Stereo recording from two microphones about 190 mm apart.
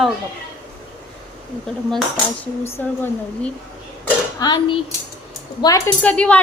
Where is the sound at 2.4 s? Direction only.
15° left (ahead or behind).